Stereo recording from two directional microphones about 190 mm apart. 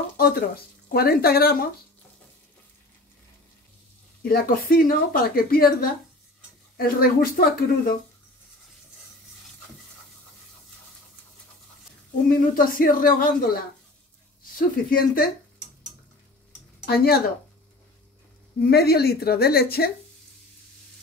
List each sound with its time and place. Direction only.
0.2 s a woman's voice: 55° left (ahead or behind)
4.2 s a woman's voice: 50° left (ahead or behind)
12.3 s a woman's voice: 50° left (ahead or behind)
14.6 s a woman's voice: 50° left (ahead or behind)
16.8 s speech: 55° left (ahead or behind)
18.6 s a woman's voice: 55° left (ahead or behind)